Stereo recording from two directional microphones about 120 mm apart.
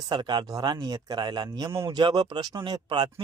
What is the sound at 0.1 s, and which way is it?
Speech, 40° right (ahead or behind).